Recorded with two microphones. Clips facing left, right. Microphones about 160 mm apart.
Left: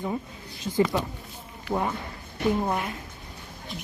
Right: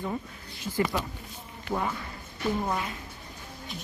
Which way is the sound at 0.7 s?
5° left (ahead or behind).